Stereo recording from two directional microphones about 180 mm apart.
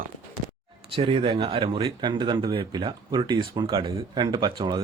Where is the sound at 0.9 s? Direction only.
30° right (ahead or behind).